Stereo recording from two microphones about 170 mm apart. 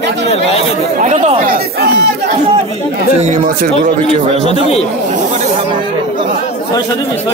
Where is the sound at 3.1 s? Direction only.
45° right (ahead or behind).